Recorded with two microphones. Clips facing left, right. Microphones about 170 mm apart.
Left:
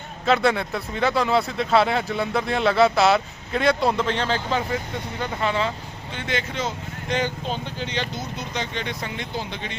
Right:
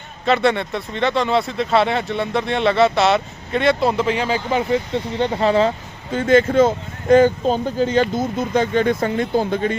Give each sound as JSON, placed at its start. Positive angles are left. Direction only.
{"t": 0.3, "sound": "speech", "side_deg": 0}
{"t": 5.1, "sound": "speech", "side_deg": -30}